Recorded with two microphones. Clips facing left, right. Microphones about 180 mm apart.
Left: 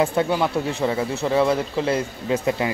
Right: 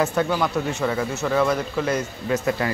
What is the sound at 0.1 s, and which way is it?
Speech, 25° left (ahead or behind).